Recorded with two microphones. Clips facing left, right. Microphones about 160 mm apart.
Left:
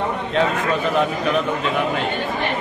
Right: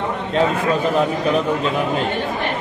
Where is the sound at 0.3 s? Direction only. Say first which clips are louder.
Right 3 dB; 35° right (ahead or behind).